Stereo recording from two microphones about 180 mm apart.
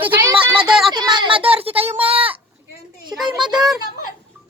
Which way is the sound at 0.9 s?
25° right (ahead or behind).